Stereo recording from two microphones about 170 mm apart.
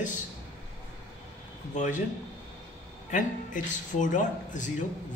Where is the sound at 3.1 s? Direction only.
50° left (ahead or behind).